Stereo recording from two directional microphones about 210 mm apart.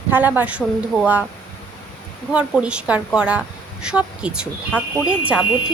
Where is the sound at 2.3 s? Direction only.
5° right (ahead or behind).